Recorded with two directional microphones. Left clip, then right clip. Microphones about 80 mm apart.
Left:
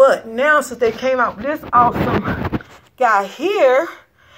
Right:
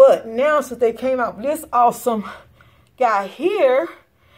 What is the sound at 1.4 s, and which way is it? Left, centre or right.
Speech, right.